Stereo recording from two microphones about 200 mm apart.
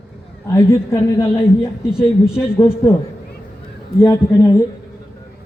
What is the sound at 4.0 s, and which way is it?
Speech, 10° left (ahead or behind).